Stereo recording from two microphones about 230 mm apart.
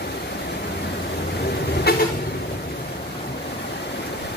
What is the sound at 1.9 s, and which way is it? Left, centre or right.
Vehicle, left.